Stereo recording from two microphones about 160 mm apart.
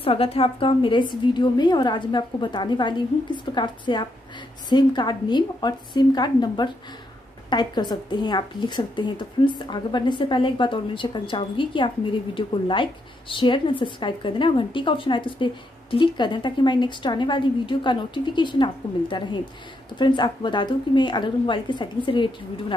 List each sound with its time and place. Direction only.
0.0 s a woman's voice: 35° left (ahead or behind)